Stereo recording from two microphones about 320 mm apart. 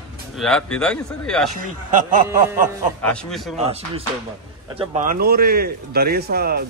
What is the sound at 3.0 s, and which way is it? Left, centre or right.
Speech, centre.